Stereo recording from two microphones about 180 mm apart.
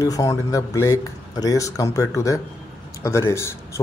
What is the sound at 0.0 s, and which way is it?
A man's voice, 20° left (ahead or behind).